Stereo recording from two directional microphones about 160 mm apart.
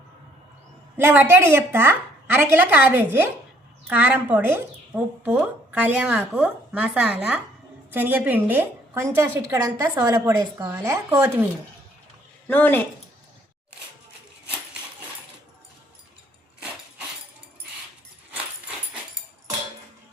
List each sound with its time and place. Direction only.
0.9 s a woman's voice: 15° right (ahead or behind)
12.5 s speech: 10° left (ahead or behind)